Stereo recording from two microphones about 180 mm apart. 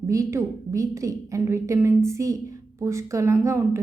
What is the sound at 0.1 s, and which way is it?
A woman's voice, 15° right (ahead or behind).